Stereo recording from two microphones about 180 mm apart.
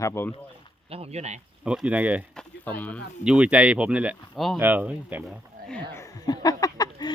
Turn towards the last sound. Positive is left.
turn(degrees=20)  # may be behind; listen again after turning